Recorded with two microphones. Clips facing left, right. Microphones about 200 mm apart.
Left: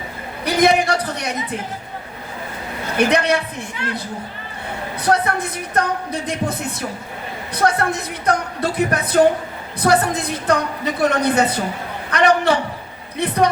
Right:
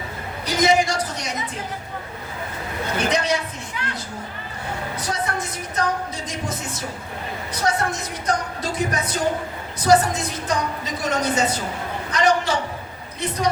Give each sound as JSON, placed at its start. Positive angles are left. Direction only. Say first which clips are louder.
{"t": 0.4, "sound": "a woman's voice", "louder": "left 3 dB", "side_deg": 60}
{"t": 3.0, "sound": "a woman's voice", "louder": "left 6 dB", "side_deg": 60}
{"t": 4.9, "sound": "a woman's voice", "louder": "left 10 dB", "side_deg": 60}
{"t": 13.1, "sound": "a sound", "louder": "left 6 dB", "side_deg": 60}